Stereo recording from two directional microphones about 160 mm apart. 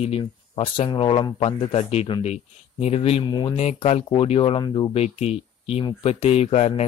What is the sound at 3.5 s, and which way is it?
Speech, 40° left (ahead or behind).